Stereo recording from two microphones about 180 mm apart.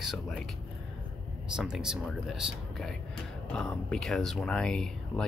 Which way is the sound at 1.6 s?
5° right (ahead or behind).